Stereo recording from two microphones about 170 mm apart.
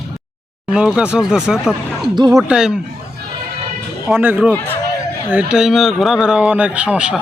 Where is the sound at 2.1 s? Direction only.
25° right (ahead or behind).